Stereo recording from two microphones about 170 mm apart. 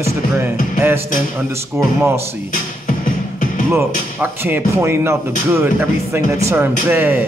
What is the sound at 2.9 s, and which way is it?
Music, 55° left (ahead or behind).